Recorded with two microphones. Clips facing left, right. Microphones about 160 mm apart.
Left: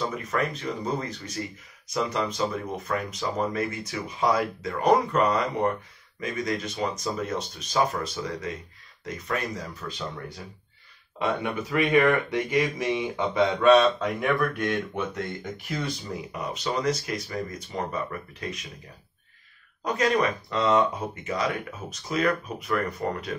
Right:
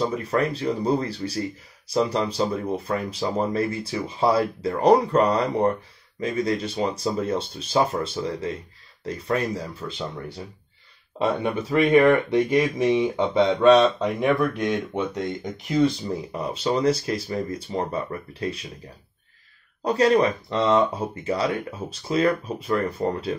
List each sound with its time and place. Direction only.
0.0 s speech: 30° right (ahead or behind)
13.7 s speech: 15° right (ahead or behind); by 18.7 s 30° right (ahead or behind)
19.8 s speech: 30° right (ahead or behind)